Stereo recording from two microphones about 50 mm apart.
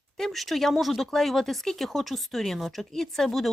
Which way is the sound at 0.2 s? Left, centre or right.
Centre.